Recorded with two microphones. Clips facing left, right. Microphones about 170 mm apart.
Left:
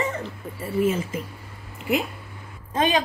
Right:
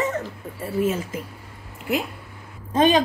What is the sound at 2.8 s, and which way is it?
Speech, 35° right (ahead or behind).